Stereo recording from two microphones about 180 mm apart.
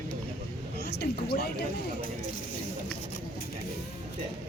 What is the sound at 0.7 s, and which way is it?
Speech, 65° left (ahead or behind).